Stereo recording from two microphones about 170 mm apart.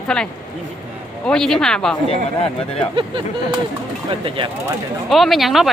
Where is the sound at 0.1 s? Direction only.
5° left (ahead or behind).